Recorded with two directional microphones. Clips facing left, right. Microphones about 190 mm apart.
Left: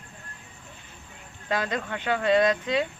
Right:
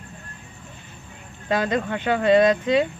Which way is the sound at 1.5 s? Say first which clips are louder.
Right 6 dB; 15° right (ahead or behind).